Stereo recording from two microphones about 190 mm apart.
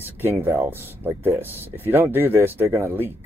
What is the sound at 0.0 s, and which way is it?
Speech, 10° right (ahead or behind).